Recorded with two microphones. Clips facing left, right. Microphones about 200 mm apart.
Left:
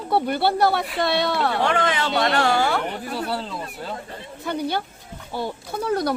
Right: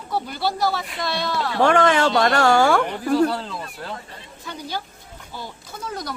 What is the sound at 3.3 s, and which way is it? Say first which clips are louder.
Speech: left 1 dB; centre (ahead or behind).